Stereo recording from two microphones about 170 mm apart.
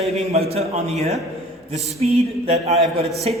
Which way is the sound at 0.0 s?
35° right (ahead or behind).